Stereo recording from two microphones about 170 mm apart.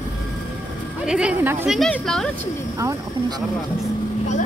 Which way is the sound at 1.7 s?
5° left (ahead or behind).